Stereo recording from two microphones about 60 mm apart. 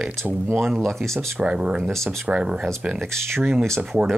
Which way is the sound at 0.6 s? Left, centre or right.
Centre.